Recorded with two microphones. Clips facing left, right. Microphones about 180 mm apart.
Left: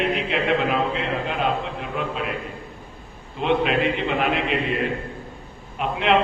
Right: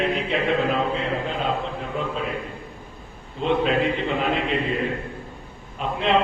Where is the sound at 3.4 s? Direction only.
70° left (ahead or behind).